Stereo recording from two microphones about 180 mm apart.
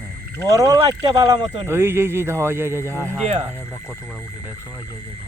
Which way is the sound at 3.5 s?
10° left (ahead or behind).